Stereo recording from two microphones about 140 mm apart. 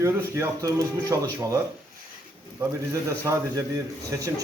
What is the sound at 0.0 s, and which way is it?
Speech, 20° right (ahead or behind).